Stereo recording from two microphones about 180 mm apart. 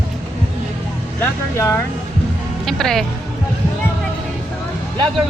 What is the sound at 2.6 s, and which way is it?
Speech, 5° left (ahead or behind).